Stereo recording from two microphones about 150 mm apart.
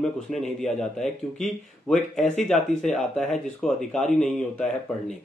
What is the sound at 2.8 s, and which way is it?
Speech, 5° left (ahead or behind).